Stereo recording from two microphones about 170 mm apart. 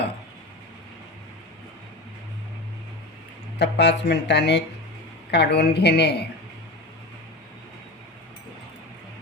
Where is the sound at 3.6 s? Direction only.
85° left.